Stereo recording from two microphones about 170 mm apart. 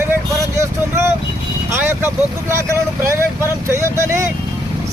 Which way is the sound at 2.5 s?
15° right (ahead or behind).